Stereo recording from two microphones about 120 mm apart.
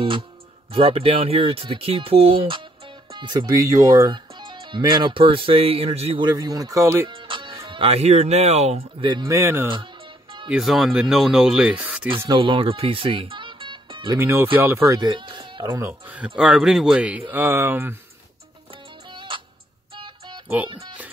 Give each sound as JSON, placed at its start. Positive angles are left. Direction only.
{"t": 0.7, "sound": "speech", "side_deg": -50}
{"t": 6.2, "sound": "speech", "side_deg": -35}
{"t": 7.1, "sound": "music", "side_deg": -45}
{"t": 8.0, "sound": "speech", "side_deg": -65}
{"t": 9.0, "sound": "speech", "side_deg": -40}
{"t": 9.3, "sound": "speech", "side_deg": -20}
{"t": 10.5, "sound": "speech", "side_deg": 0}
{"t": 12.3, "sound": "speech", "side_deg": -45}
{"t": 14.1, "sound": "speech", "side_deg": -20}
{"t": 15.0, "sound": "music", "side_deg": -40}
{"t": 15.6, "sound": "speech", "side_deg": -20}
{"t": 16.3, "sound": "speech", "side_deg": -5}
{"t": 19.1, "sound": "music", "side_deg": -45}
{"t": 20.4, "sound": "speech", "side_deg": -15}